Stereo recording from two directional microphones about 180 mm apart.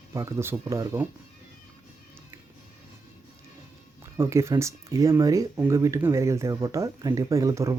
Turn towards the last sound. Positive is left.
turn(degrees=-15)  # may be behind; listen again after turning